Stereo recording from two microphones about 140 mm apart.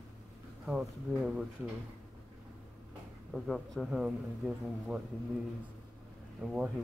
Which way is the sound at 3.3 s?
Centre (ahead or behind).